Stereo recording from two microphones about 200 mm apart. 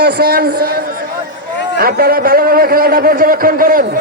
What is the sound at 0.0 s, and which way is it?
A man's voice, 55° right (ahead or behind).